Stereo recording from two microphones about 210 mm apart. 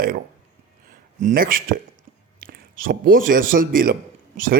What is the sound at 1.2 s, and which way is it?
A man's voice, 40° right (ahead or behind).